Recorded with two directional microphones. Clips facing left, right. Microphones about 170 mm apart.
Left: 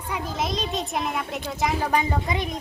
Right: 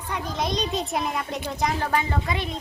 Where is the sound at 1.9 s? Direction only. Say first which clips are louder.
Left 1 dB; 15° left (ahead or behind).